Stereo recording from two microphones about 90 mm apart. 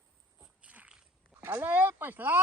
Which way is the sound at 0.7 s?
15° right (ahead or behind).